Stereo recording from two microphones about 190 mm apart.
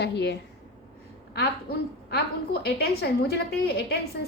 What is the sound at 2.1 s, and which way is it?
A woman's voice, 55° left (ahead or behind).